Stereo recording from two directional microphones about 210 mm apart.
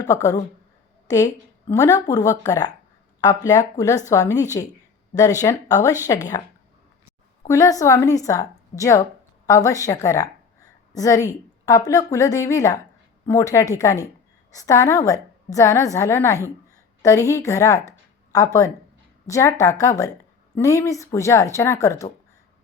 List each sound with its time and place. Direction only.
0.0 s a woman's voice: 15° left (ahead or behind)
7.4 s a woman's voice: 15° left (ahead or behind)